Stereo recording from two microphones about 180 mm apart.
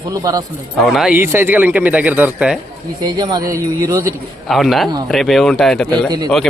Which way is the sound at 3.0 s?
25° right (ahead or behind).